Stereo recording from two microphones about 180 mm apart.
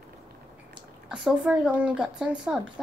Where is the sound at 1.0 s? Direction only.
5° right (ahead or behind).